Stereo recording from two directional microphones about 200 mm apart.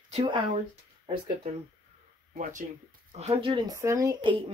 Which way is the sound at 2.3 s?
40° right (ahead or behind).